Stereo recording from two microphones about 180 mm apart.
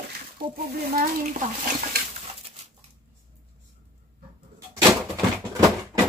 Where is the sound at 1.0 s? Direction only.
45° right (ahead or behind).